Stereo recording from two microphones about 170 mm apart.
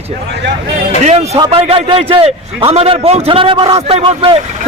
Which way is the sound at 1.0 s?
40° right (ahead or behind).